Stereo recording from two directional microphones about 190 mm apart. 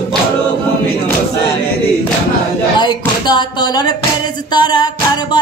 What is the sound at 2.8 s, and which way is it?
Music, 20° left (ahead or behind).